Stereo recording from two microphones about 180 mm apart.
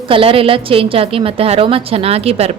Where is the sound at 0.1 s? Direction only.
30° right (ahead or behind).